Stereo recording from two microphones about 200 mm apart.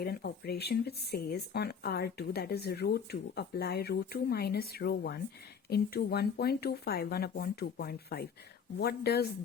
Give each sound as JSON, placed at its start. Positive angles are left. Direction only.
{"t": 0.0, "sound": "speech", "side_deg": 50}